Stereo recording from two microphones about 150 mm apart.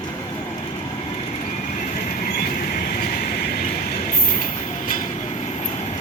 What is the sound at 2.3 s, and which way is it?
Train, 90° left.